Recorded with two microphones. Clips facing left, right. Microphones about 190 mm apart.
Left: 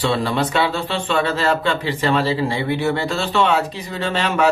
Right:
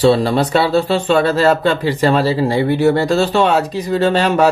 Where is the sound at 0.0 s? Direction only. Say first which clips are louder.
Right 7 dB; 35° right (ahead or behind).